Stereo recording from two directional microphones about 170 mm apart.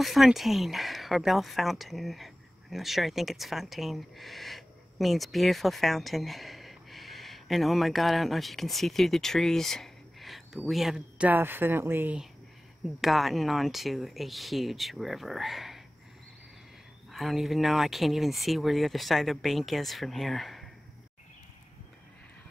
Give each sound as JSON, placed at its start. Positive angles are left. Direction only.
{"t": 0.0, "sound": "speech", "side_deg": 0}
{"t": 17.1, "sound": "speech", "side_deg": 0}